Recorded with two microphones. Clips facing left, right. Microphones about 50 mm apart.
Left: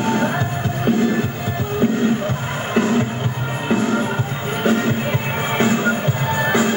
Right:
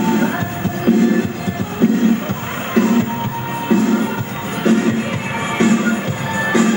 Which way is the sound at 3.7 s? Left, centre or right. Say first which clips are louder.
Right 3 dB; left.